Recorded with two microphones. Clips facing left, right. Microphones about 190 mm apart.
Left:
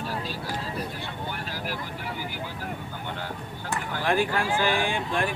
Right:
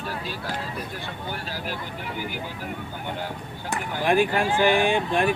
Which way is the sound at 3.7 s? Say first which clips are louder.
Right 3 dB; 15° right (ahead or behind).